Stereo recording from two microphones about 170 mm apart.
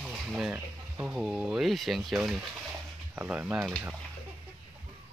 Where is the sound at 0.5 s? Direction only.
15° right (ahead or behind).